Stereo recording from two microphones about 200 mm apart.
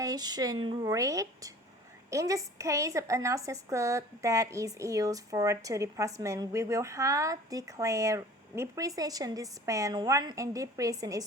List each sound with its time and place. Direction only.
0.0 s a woman's voice: 20° right (ahead or behind)